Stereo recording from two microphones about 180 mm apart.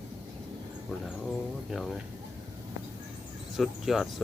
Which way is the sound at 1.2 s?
Centre (ahead or behind).